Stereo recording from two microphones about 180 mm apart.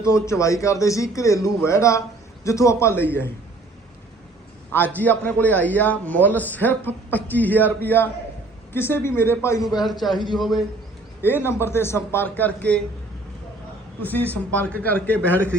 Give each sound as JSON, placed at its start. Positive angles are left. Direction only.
{"t": 0.0, "sound": "a man's voice", "side_deg": 15}
{"t": 4.9, "sound": "a man's voice", "side_deg": 10}
{"t": 10.0, "sound": "a man's voice", "side_deg": 0}
{"t": 11.2, "sound": "a man's voice", "side_deg": 10}
{"t": 14.0, "sound": "a man's voice", "side_deg": 10}